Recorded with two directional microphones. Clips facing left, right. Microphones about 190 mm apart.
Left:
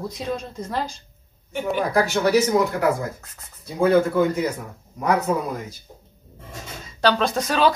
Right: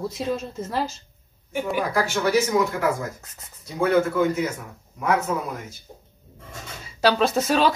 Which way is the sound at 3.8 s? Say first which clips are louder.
Left 2 dB; 35° left (ahead or behind).